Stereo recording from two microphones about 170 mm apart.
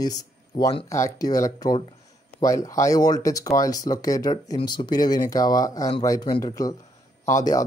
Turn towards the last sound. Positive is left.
turn(degrees=20)  # may be behind; listen again after turning